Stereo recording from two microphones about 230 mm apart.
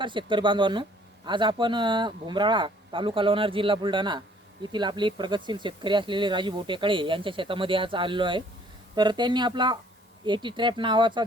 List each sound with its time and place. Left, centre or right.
0.0 s speech: right